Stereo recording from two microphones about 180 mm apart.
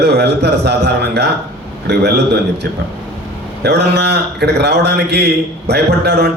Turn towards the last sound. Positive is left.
turn(degrees=-65)  # may be behind; listen again after turning